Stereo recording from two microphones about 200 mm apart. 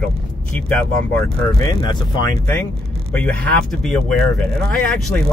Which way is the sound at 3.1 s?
10° left (ahead or behind).